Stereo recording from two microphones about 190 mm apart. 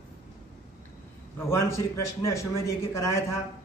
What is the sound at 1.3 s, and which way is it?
A man's voice, 15° left (ahead or behind).